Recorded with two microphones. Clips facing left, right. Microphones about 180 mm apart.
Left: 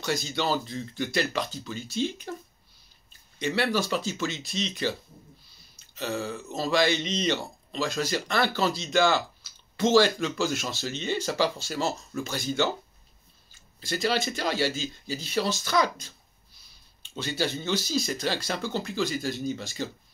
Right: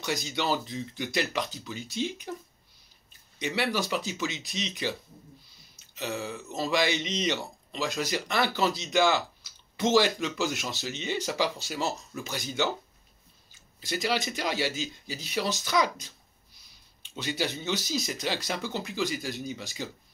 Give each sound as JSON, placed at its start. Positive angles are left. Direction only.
{"t": 0.0, "sound": "speech", "side_deg": -15}
{"t": 3.3, "sound": "speech", "side_deg": -15}
{"t": 5.9, "sound": "speech", "side_deg": -15}
{"t": 13.7, "sound": "speech", "side_deg": -15}